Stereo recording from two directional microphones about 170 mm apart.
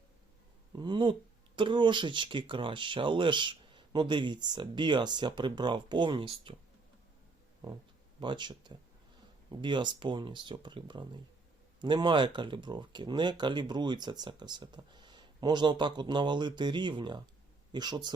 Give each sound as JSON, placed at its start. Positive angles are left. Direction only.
{"t": 0.8, "sound": "speech", "side_deg": -25}
{"t": 8.2, "sound": "speech", "side_deg": -25}